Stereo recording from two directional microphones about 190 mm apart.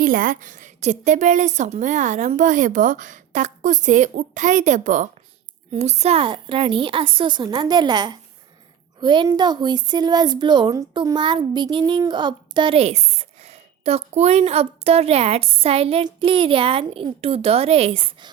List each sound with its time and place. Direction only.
0.0 s a woman's voice: 45° right (ahead or behind); by 18.3 s 30° right (ahead or behind)